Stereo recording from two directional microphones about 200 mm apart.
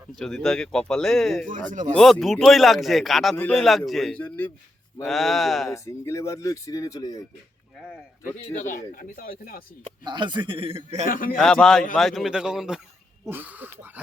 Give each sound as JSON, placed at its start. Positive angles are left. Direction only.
{"t": 0.2, "sound": "speech", "side_deg": 5}
{"t": 1.7, "sound": "speech", "side_deg": -40}
{"t": 2.0, "sound": "speech", "side_deg": 0}
{"t": 5.7, "sound": "speech", "side_deg": 15}
{"t": 8.5, "sound": "speech", "side_deg": 40}
{"t": 9.8, "sound": "a man's voice", "side_deg": -20}
{"t": 11.0, "sound": "speech", "side_deg": 45}
{"t": 11.3, "sound": "speech", "side_deg": 5}